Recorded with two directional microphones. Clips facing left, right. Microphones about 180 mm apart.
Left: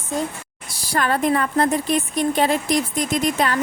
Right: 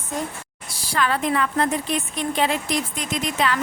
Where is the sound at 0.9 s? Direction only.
45° left (ahead or behind).